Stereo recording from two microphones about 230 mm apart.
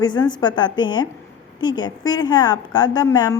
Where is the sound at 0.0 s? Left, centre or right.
Centre.